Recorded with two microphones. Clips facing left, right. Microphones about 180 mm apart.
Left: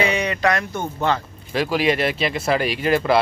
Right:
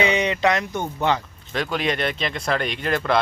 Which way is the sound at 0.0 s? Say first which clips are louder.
Even; 20° right (ahead or behind).